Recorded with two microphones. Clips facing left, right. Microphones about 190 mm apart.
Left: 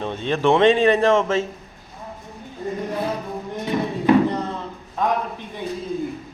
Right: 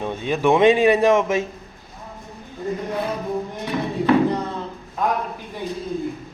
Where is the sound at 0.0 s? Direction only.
10° right (ahead or behind).